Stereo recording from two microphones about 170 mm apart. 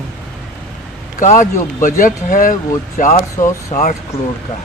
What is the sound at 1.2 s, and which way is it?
A man's voice, 45° left (ahead or behind).